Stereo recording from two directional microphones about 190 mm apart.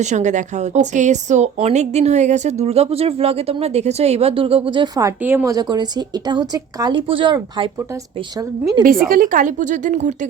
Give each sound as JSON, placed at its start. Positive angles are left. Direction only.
{"t": 0.0, "sound": "a woman's voice", "side_deg": -40}
{"t": 8.8, "sound": "speech", "side_deg": -50}